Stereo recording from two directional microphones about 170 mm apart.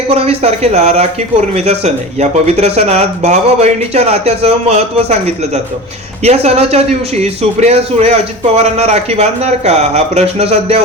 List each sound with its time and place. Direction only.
0.1 s a man's voice: 35° right (ahead or behind)